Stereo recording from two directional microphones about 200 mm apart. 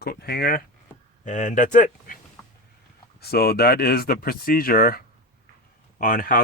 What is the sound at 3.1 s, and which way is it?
Speech, 50° left (ahead or behind).